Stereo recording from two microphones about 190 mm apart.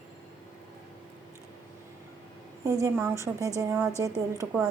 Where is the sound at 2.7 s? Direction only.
15° right (ahead or behind).